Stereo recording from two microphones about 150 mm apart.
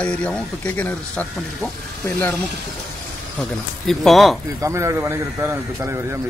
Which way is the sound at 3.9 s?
Centre (ahead or behind).